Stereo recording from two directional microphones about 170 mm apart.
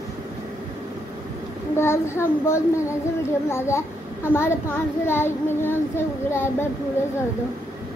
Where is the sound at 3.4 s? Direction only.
15° left (ahead or behind).